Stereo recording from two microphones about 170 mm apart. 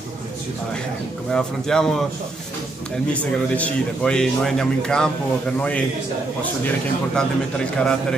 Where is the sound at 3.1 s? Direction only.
5° left (ahead or behind).